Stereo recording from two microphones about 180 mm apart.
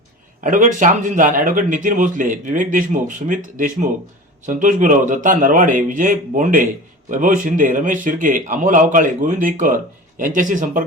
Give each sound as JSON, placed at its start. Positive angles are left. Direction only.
{"t": 0.4, "sound": "speech", "side_deg": -45}